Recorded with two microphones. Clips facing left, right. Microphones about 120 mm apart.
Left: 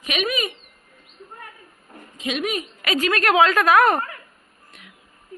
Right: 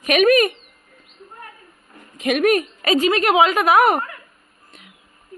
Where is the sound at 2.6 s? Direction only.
30° right (ahead or behind).